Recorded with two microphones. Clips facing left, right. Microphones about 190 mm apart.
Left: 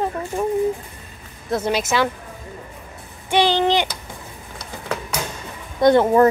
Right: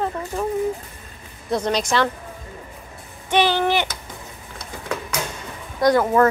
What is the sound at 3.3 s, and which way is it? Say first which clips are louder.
Speech: left 1 dB; 15° left (ahead or behind).